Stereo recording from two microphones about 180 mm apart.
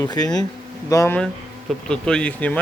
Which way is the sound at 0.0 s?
20° left (ahead or behind).